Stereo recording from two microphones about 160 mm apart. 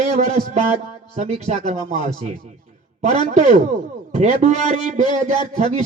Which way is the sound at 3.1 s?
45° right (ahead or behind).